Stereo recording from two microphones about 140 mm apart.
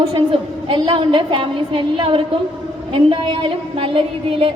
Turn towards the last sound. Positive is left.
turn(degrees=-40)  # may be behind; listen again after turning